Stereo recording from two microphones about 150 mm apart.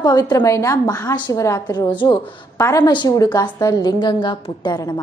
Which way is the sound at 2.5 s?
20° left (ahead or behind).